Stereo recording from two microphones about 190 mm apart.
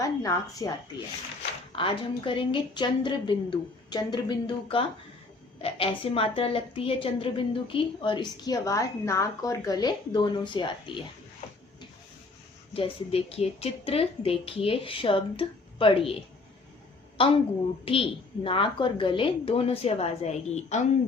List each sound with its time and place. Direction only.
0.0 s a woman's voice: 15° left (ahead or behind)
12.7 s a woman's voice: 30° left (ahead or behind)
17.2 s a woman's voice: 30° left (ahead or behind)